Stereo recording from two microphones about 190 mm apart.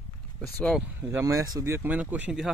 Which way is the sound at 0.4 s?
10° left (ahead or behind).